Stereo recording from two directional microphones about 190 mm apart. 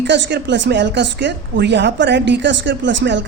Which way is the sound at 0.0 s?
65° right (ahead or behind).